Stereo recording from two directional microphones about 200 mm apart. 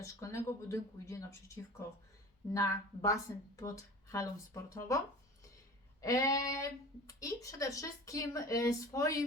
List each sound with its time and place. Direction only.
0.0 s speech: 15° left (ahead or behind)